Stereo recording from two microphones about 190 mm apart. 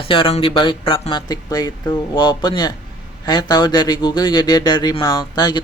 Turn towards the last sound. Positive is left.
turn(degrees=20)  # may be behind; listen again after turning